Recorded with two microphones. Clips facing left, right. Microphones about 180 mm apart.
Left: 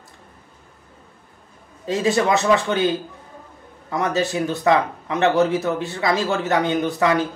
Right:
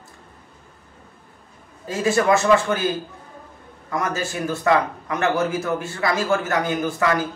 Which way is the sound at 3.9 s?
20° left (ahead or behind).